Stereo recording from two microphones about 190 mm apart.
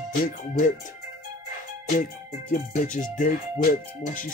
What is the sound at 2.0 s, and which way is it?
Speech, 45° left (ahead or behind).